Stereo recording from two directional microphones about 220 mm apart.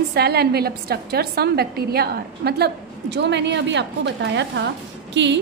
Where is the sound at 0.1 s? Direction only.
45° right (ahead or behind).